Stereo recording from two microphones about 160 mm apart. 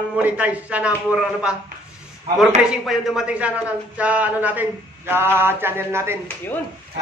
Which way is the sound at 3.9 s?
10° right (ahead or behind).